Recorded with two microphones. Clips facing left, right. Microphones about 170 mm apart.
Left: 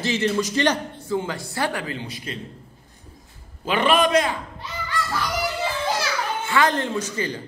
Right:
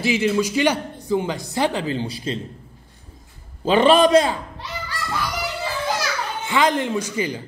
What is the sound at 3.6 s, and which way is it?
Speech, 30° right (ahead or behind).